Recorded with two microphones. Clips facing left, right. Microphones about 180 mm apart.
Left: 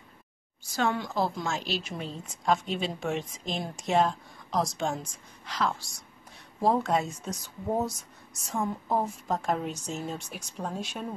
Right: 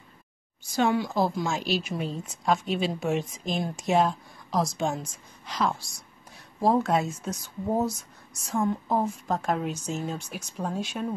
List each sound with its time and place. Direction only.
0.7 s a woman's voice: 10° right (ahead or behind)